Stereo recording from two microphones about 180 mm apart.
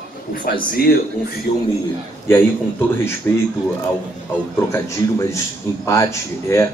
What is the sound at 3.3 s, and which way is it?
Speech, 15° left (ahead or behind).